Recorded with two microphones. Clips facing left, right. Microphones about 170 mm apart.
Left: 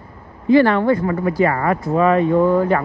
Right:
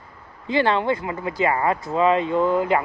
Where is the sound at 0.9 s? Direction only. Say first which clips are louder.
Left 9 dB; 45° left (ahead or behind).